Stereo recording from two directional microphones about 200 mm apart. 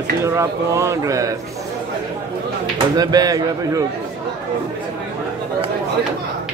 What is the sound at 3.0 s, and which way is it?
Speech, 20° right (ahead or behind).